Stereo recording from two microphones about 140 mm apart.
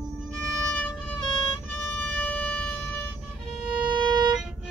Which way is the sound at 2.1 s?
10° left (ahead or behind).